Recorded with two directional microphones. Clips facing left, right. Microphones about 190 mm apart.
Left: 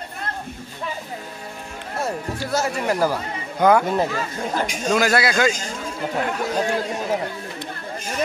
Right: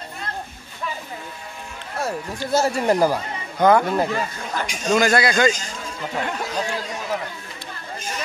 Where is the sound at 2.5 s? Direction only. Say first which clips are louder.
Right 4 dB; 30° right (ahead or behind).